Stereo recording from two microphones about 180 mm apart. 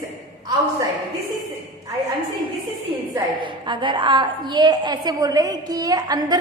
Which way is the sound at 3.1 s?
25° right (ahead or behind).